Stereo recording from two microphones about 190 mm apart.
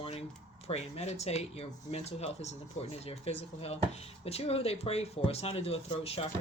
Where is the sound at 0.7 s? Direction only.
35° left (ahead or behind).